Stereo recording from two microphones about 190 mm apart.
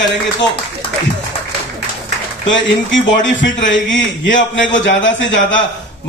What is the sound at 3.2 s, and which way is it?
A man's voice, 70° left (ahead or behind).